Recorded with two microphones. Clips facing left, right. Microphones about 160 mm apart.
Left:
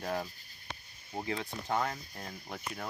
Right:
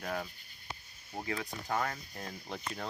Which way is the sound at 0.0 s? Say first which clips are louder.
Left 2 dB; 20° left (ahead or behind).